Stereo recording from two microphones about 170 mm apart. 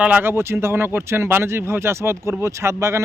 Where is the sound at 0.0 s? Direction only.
10° right (ahead or behind).